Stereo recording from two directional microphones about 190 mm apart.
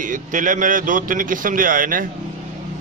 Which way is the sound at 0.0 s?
45° right (ahead or behind).